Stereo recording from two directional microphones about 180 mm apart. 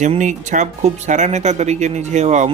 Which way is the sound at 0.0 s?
40° right (ahead or behind).